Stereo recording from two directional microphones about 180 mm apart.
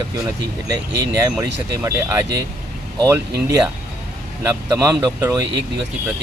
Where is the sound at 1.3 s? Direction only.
15° right (ahead or behind).